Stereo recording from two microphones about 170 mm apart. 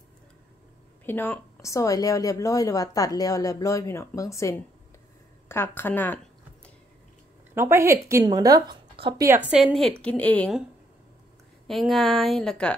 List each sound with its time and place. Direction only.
1.0 s a woman's voice: 10° left (ahead or behind)
7.5 s a woman's voice: 15° right (ahead or behind)
9.2 s a woman's voice: 10° right (ahead or behind); by 10.5 s 10° left (ahead or behind)
11.6 s a woman's voice: centre (ahead or behind)